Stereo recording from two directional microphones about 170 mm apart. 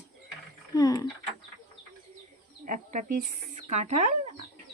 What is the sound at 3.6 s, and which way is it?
Speech, 40° right (ahead or behind).